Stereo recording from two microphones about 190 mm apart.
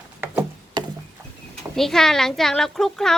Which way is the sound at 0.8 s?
25° right (ahead or behind).